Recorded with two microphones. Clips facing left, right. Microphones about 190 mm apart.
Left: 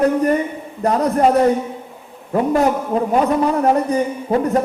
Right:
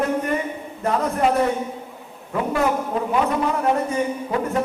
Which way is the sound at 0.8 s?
40° left (ahead or behind).